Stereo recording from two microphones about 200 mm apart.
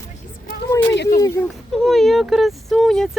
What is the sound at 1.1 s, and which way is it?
Speech, 15° left (ahead or behind).